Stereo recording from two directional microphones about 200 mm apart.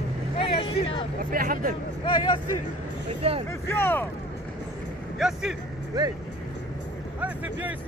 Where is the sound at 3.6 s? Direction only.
10° left (ahead or behind).